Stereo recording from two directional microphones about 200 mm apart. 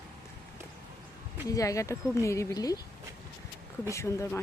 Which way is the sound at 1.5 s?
15° left (ahead or behind).